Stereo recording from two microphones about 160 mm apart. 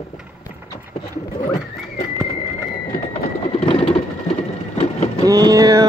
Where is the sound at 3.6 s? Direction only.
35° left (ahead or behind).